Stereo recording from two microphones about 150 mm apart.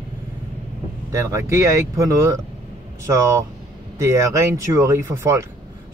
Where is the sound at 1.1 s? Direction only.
20° right (ahead or behind).